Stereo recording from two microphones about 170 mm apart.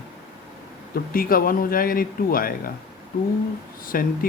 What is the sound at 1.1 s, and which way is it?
Speech, 60° left (ahead or behind).